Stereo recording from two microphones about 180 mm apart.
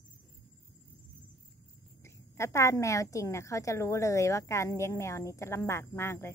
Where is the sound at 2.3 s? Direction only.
15° left (ahead or behind).